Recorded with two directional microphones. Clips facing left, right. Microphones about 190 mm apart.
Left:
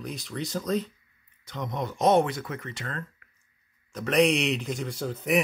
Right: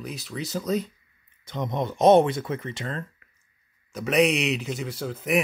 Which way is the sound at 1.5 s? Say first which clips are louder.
Right 4 dB; 20° right (ahead or behind).